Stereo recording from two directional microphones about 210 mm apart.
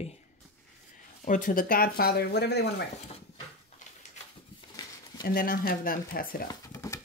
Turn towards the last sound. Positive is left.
turn(degrees=15)  # may be behind; listen again after turning